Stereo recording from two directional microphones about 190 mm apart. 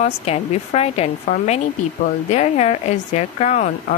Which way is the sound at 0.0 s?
35° left (ahead or behind).